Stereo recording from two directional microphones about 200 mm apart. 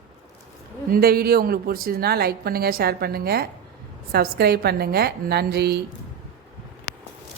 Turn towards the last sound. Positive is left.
turn(degrees=-55)  # may be behind; listen again after turning